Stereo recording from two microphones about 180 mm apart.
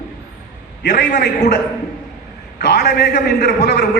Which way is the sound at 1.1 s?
45° left (ahead or behind).